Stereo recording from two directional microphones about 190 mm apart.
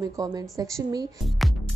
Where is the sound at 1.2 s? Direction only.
Centre (ahead or behind).